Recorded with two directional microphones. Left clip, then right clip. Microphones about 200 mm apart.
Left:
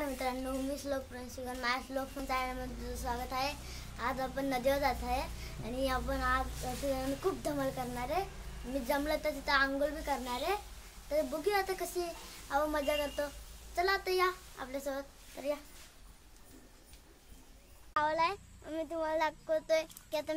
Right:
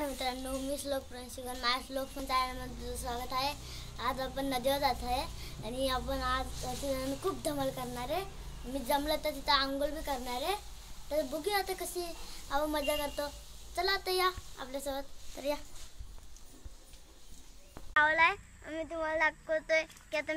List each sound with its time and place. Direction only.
0.0 s a child's voice: 5° left (ahead or behind)
15.3 s a child's voice: 15° right (ahead or behind)
17.9 s a child's voice: 10° left (ahead or behind)
18.7 s a child's voice: 25° left (ahead or behind)